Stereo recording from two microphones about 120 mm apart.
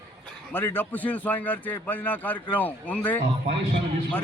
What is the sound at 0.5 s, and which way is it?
A man's voice, 15° left (ahead or behind).